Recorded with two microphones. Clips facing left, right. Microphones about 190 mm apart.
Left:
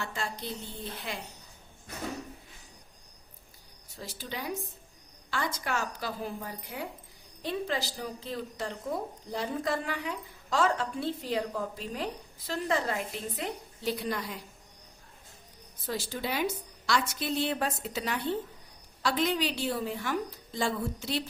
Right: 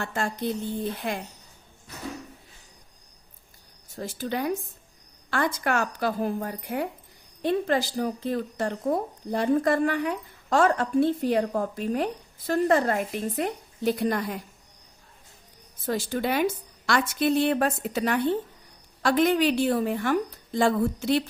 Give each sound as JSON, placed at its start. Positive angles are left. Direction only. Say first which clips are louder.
{"t": 0.0, "sound": "speech", "louder": "right 8 dB", "side_deg": -50}
{"t": 3.9, "sound": "a woman's voice", "louder": "right 10 dB", "side_deg": -50}
{"t": 15.9, "sound": "a woman's voice", "louder": "right 7 dB", "side_deg": -55}